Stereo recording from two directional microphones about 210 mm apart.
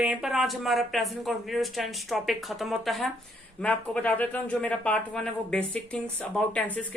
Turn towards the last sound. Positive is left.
turn(degrees=5)  # may be behind; listen again after turning